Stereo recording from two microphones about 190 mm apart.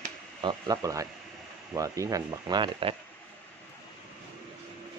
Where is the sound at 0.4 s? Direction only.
20° right (ahead or behind).